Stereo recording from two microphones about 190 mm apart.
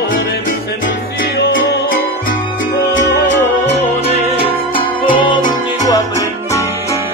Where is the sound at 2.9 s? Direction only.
75° left (ahead or behind).